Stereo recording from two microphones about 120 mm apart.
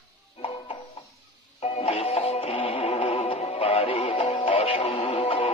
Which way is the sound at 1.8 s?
55° left (ahead or behind).